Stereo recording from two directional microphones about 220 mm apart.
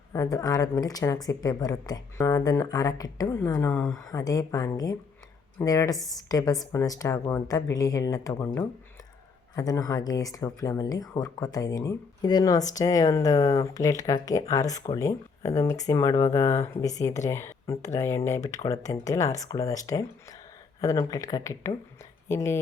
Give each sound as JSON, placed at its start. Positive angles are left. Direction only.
{"t": 0.1, "sound": "speech", "side_deg": 15}
{"t": 9.6, "sound": "speech", "side_deg": 15}